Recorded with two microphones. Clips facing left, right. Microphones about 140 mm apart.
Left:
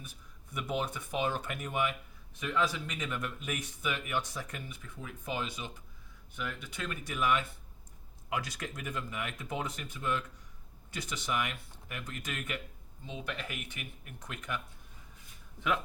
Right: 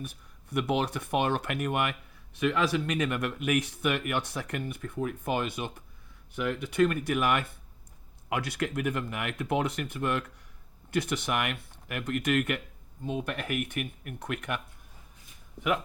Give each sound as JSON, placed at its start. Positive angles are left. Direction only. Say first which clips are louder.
{"t": 0.0, "sound": "speech", "louder": "right 10 dB", "side_deg": -70}
{"t": 13.1, "sound": "speech", "louder": "right 8 dB", "side_deg": -55}